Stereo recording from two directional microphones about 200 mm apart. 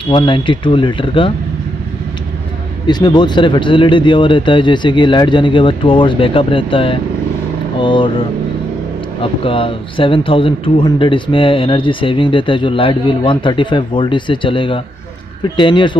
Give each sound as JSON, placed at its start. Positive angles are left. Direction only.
{"t": 0.1, "sound": "speech", "side_deg": 25}
{"t": 2.9, "sound": "speech", "side_deg": 20}
{"t": 9.2, "sound": "speech", "side_deg": 25}